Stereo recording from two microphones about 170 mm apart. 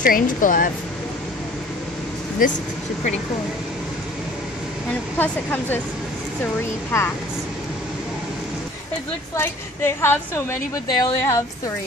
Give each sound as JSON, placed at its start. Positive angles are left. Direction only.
{"t": 0.0, "sound": "a woman's voice", "side_deg": 55}
{"t": 5.1, "sound": "a woman's voice", "side_deg": 10}
{"t": 9.3, "sound": "a woman's voice", "side_deg": 15}